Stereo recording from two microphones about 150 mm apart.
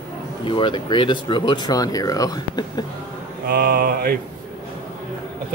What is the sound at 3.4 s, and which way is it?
Mantra, 90° right.